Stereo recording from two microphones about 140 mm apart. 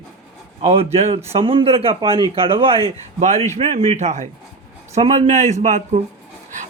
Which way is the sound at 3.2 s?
55° right (ahead or behind).